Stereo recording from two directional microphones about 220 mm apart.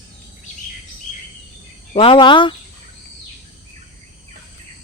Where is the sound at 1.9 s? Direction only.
25° left (ahead or behind).